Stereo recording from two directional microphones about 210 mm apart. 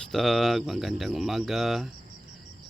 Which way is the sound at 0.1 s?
Centre (ahead or behind).